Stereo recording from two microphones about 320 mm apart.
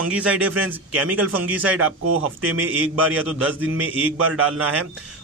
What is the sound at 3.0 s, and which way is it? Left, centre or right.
Speech, centre.